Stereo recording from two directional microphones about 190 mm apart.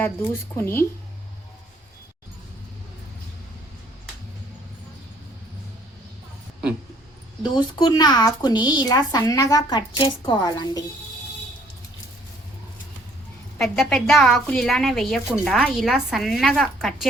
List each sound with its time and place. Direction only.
0.5 s speech: 10° left (ahead or behind)
7.5 s speech: 20° left (ahead or behind)
13.6 s a woman's voice: centre (ahead or behind)